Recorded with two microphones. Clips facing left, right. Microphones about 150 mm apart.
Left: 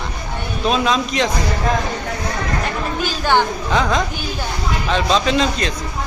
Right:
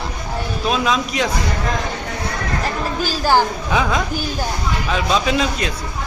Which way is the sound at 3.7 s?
10° right (ahead or behind).